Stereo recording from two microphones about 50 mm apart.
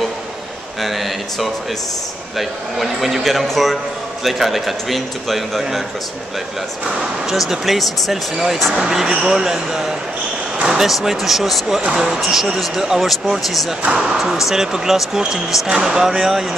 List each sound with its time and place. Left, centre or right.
0.7 s a man's voice: centre
7.2 s a man's voice: centre
12.2 s a man's voice: centre
13.8 s speech: centre
14.1 s a man's voice: centre